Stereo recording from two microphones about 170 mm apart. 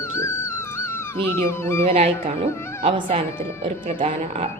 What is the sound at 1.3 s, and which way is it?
Speech, 15° left (ahead or behind).